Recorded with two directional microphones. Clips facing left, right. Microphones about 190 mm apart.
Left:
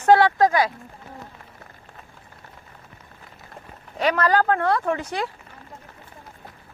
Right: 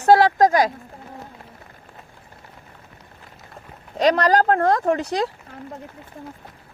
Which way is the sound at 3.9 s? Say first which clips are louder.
Right 3 dB; 40° right (ahead or behind).